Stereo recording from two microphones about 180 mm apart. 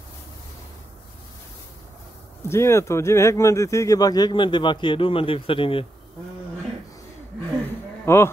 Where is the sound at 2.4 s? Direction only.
15° left (ahead or behind); by 5.9 s 30° left (ahead or behind).